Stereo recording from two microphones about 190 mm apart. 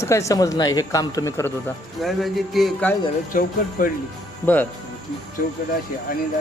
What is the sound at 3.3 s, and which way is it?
Speech, 45° left (ahead or behind).